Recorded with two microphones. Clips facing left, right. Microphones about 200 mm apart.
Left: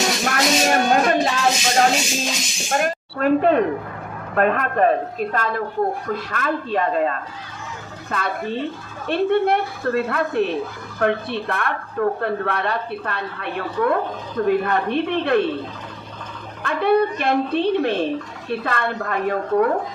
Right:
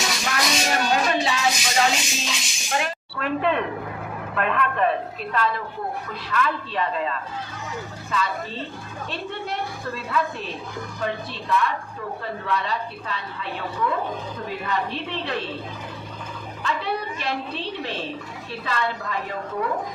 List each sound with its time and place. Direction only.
0.1 s music: 50° left (ahead or behind)
4.4 s a woman's voice: 45° left (ahead or behind)
16.6 s speech: 55° left (ahead or behind)